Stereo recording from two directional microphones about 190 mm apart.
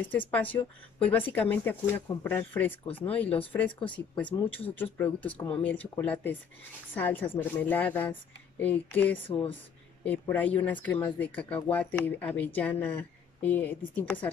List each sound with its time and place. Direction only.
0.3 s speech: 10° left (ahead or behind)
9.3 s speech: 30° left (ahead or behind)
10.0 s speech: 10° left (ahead or behind)